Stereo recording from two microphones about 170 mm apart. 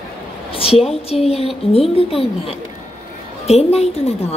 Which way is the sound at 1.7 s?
35° left (ahead or behind).